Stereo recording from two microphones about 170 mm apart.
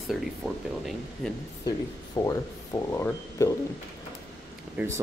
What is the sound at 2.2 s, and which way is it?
Speech, 15° left (ahead or behind).